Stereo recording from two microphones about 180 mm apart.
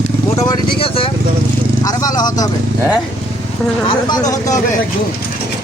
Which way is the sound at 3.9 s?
25° left (ahead or behind).